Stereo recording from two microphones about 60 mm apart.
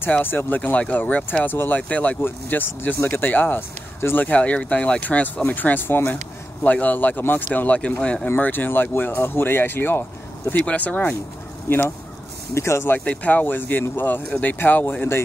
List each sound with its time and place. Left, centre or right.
0.2 s speech: left
0.6 s speech: left
1.8 s speech: left
2.2 s speech: left
4.3 s speech: left
6.6 s speech: left
8.0 s speech: centre
8.4 s speech: left
10.5 s speech: left
12.5 s speech: left
13.0 s speech: left